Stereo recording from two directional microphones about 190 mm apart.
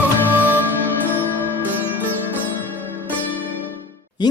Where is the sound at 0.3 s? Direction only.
10° right (ahead or behind).